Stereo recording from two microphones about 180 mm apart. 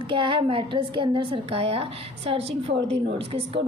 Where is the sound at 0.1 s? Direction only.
30° right (ahead or behind).